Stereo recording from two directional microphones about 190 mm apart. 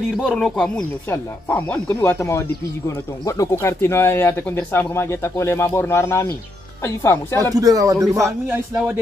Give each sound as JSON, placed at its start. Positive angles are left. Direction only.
{"t": 0.1, "sound": "speech", "side_deg": 5}
{"t": 7.5, "sound": "speech", "side_deg": -20}